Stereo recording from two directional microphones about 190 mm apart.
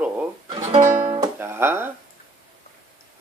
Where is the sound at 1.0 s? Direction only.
25° right (ahead or behind).